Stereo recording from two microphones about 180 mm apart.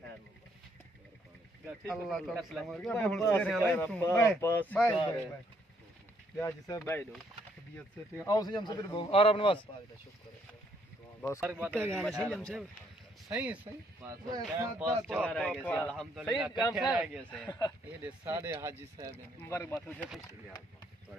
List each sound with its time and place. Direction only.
1.9 s a man's voice: centre (ahead or behind)
6.3 s speech: 15° left (ahead or behind)
11.3 s speech: 10° right (ahead or behind)
11.9 s a man's voice: 5° left (ahead or behind)
14.8 s speech: 5° right (ahead or behind)
15.2 s a man's voice: 5° left (ahead or behind)
17.5 s speech: 20° left (ahead or behind)
17.8 s speech: 10° right (ahead or behind)
19.4 s speech: 15° left (ahead or behind)